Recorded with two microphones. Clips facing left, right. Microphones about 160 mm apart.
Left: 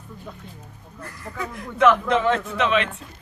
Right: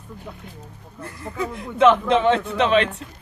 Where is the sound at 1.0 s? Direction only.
25° right (ahead or behind).